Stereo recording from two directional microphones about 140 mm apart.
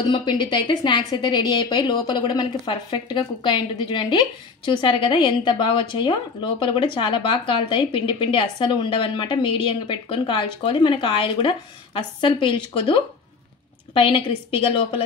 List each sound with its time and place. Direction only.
0.1 s a woman's voice: 35° left (ahead or behind)